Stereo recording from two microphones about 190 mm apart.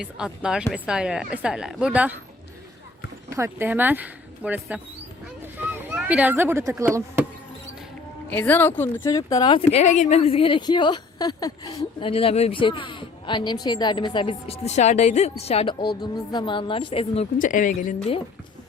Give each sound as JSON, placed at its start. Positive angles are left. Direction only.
{"t": 0.0, "sound": "speech", "side_deg": -5}
{"t": 3.2, "sound": "speech", "side_deg": -15}
{"t": 5.4, "sound": "a sound", "side_deg": -10}
{"t": 8.3, "sound": "speech", "side_deg": 10}
{"t": 17.3, "sound": "speech", "side_deg": 45}